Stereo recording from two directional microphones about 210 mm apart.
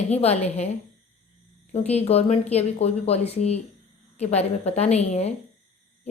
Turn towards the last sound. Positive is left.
turn(degrees=30)  # may be behind; listen again after turning